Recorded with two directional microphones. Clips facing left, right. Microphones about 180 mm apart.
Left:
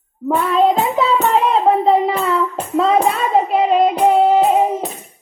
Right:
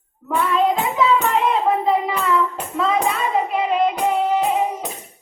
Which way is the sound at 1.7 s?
35° left (ahead or behind).